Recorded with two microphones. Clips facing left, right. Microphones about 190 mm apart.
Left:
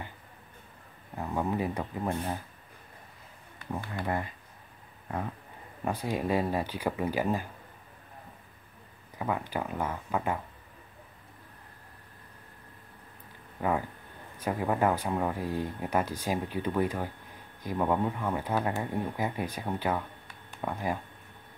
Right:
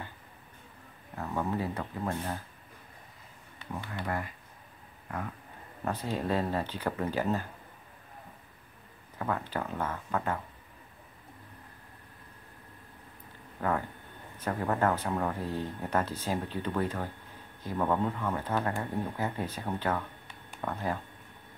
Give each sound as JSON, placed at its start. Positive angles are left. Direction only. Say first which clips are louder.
{"t": 1.1, "sound": "speech", "louder": "left 2 dB", "side_deg": 15}
{"t": 3.9, "sound": "speech", "louder": "left 2 dB", "side_deg": 20}
{"t": 5.9, "sound": "speech", "louder": "left 2 dB", "side_deg": 10}
{"t": 9.2, "sound": "speech", "louder": "left 1 dB", "side_deg": 15}
{"t": 13.6, "sound": "speech", "louder": "left 2 dB", "side_deg": 10}